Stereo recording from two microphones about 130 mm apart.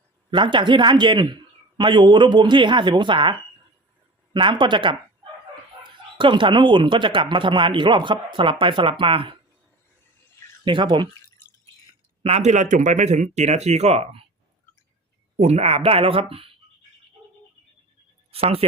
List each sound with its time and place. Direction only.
0.3 s speech: 35° right (ahead or behind)
4.4 s speech: 40° right (ahead or behind)
10.7 s speech: 40° right (ahead or behind)
12.2 s speech: 55° right (ahead or behind)
15.4 s speech: 55° right (ahead or behind)
18.3 s speech: 50° right (ahead or behind)